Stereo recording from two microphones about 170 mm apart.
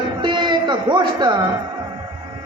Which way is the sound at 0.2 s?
25° right (ahead or behind).